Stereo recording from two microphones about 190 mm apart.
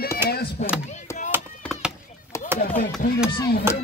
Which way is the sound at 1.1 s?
15° left (ahead or behind).